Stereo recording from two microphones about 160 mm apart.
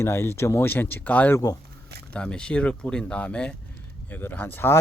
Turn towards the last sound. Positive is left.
turn(degrees=15)  # may be behind; listen again after turning